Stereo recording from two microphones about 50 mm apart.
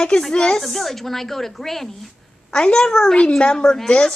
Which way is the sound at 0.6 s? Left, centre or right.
Centre.